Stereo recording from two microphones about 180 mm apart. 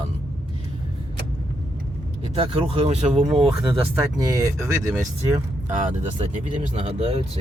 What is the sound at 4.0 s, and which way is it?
Speech, 15° right (ahead or behind).